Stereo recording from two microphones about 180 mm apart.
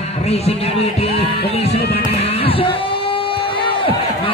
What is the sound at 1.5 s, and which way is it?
Music, 35° left (ahead or behind).